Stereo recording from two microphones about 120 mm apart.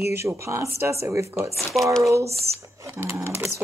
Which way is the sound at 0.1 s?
20° right (ahead or behind).